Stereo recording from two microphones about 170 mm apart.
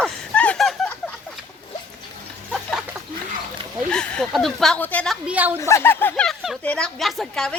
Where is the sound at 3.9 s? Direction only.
5° left (ahead or behind).